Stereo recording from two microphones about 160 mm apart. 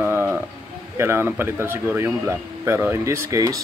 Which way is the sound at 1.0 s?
15° right (ahead or behind).